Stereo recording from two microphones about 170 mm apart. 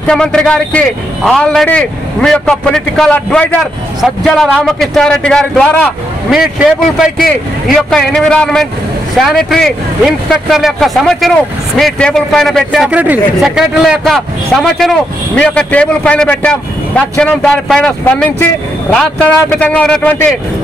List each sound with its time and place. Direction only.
0.0 s speech: 5° left (ahead or behind)
7.6 s a man's voice: centre (ahead or behind)